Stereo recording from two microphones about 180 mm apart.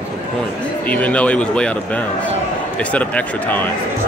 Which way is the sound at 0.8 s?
10° left (ahead or behind).